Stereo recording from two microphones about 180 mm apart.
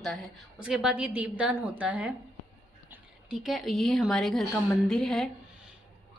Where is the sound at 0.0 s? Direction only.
Centre (ahead or behind).